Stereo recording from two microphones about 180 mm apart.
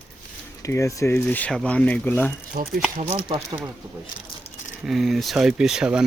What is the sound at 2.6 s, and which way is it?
Speech, 55° right (ahead or behind).